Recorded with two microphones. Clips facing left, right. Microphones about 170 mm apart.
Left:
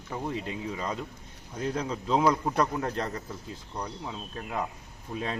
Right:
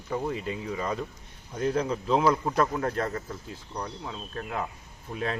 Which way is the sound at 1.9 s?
5° right (ahead or behind).